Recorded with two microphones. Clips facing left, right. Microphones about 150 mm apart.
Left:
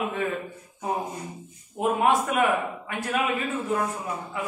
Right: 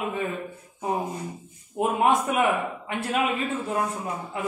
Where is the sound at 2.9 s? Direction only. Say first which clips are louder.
Right 2 dB; 25° right (ahead or behind).